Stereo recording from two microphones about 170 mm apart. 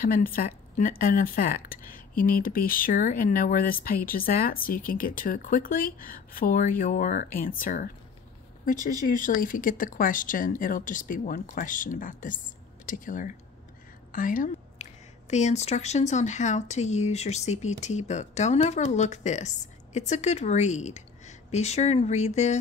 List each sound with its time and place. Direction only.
0.0 s a woman's voice: 55° left (ahead or behind); by 22.6 s 40° left (ahead or behind)